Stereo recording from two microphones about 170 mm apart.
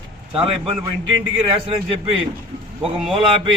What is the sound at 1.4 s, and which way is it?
Speech, 30° right (ahead or behind).